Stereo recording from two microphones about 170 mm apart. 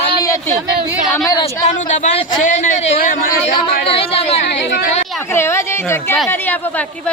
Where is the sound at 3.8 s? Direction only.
30° left (ahead or behind).